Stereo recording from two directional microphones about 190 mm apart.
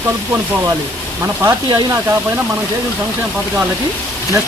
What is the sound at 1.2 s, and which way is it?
Speech, 15° right (ahead or behind).